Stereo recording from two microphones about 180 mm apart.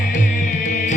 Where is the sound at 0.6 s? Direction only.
40° left (ahead or behind).